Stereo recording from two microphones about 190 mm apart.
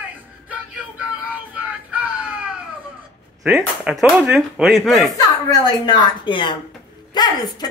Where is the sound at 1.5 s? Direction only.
5° right (ahead or behind).